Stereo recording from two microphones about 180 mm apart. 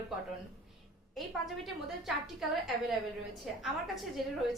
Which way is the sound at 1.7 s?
Centre (ahead or behind).